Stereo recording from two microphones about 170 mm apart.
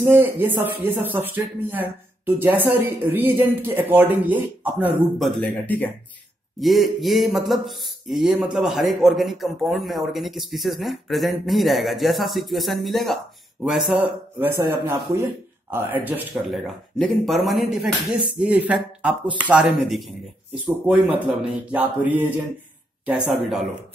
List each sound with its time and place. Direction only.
0.0 s speech: 10° right (ahead or behind)
5.2 s speech: 5° left (ahead or behind); by 16.2 s 10° right (ahead or behind)
16.4 s speech: centre (ahead or behind)